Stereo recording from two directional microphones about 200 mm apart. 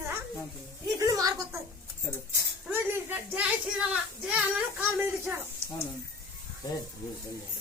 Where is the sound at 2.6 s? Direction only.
5° right (ahead or behind).